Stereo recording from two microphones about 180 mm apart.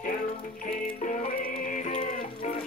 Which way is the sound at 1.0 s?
45° left (ahead or behind).